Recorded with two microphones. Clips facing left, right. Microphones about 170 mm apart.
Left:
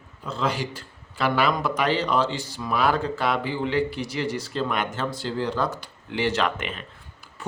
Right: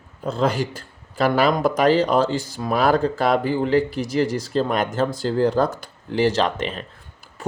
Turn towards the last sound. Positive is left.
turn(degrees=-40)  # may be behind; listen again after turning